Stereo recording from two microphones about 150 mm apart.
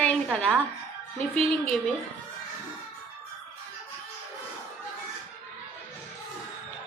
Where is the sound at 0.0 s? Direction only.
10° left (ahead or behind).